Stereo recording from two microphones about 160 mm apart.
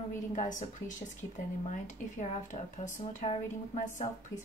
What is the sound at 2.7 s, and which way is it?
Speech, 50° left (ahead or behind).